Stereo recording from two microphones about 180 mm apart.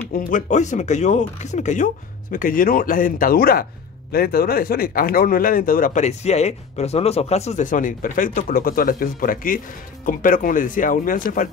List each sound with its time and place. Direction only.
0.2 s speech: 45° left (ahead or behind)